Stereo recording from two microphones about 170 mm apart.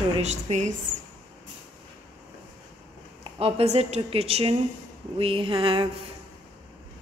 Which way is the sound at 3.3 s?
35° right (ahead or behind).